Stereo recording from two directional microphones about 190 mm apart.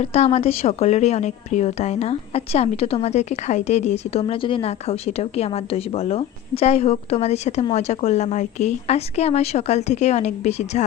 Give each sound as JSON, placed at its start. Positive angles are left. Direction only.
{"t": 0.0, "sound": "a woman's voice", "side_deg": 35}